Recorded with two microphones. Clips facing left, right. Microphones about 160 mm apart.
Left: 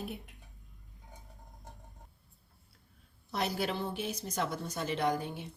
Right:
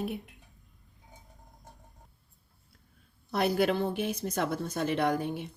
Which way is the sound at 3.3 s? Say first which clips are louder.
Right 7 dB; 60° right (ahead or behind).